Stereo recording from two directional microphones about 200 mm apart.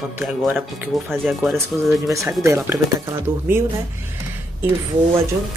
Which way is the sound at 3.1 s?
10° right (ahead or behind).